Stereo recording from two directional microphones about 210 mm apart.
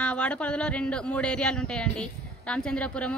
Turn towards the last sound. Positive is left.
turn(degrees=5)  # may be behind; listen again after turning